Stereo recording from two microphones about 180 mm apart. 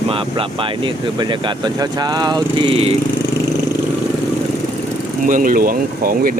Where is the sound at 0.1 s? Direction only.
30° right (ahead or behind).